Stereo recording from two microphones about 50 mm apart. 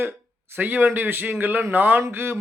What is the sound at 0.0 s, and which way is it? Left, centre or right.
A man's voice, right.